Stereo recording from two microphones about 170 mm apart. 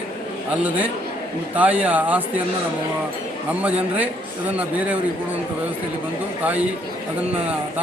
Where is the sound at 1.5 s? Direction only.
10° right (ahead or behind).